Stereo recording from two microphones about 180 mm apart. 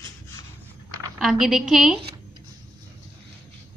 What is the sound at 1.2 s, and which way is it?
Speech, centre (ahead or behind).